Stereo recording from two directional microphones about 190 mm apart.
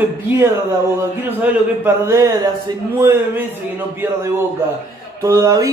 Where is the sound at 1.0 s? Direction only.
10° right (ahead or behind).